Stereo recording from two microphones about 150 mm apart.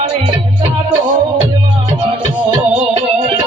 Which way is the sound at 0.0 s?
30° right (ahead or behind).